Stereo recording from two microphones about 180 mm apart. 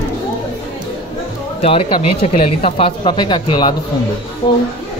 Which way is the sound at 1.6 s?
35° left (ahead or behind).